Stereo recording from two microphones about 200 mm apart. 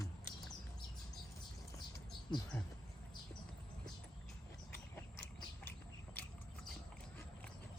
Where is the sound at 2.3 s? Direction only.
20° left (ahead or behind).